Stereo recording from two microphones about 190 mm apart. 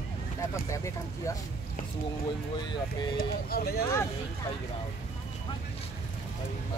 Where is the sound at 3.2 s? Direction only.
55° left (ahead or behind).